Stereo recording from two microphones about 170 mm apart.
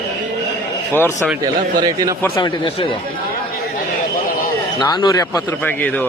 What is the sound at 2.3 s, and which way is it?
Speech, 30° left (ahead or behind).